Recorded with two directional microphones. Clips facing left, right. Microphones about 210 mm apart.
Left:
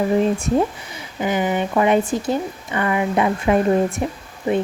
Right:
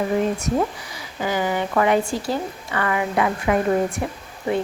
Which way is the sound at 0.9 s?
20° left (ahead or behind).